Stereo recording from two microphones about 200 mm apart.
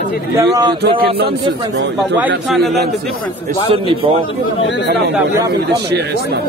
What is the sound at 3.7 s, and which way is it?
Speech, 25° right (ahead or behind).